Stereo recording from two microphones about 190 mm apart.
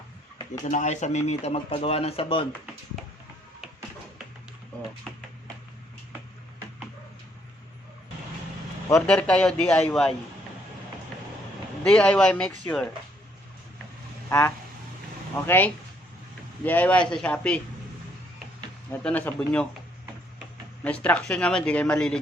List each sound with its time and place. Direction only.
0.6 s speech: 40° left (ahead or behind)
9.0 s speech: 5° left (ahead or behind)
11.8 s speech: 5° left (ahead or behind)
14.3 s speech: 15° left (ahead or behind)
18.9 s speech: 10° left (ahead or behind)
20.8 s speech: 5° left (ahead or behind)